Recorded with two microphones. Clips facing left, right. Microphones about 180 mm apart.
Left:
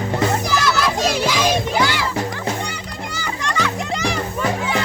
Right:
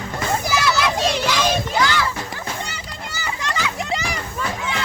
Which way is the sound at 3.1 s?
5° right (ahead or behind).